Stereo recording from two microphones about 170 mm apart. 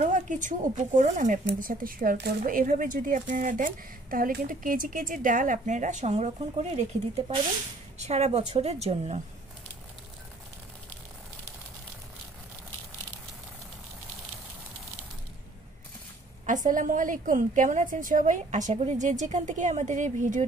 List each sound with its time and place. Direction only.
0.0 s a woman's voice: 45° right (ahead or behind)
16.4 s a woman's voice: 50° right (ahead or behind)